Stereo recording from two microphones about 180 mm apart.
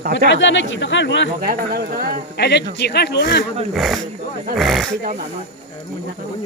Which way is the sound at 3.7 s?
Centre (ahead or behind).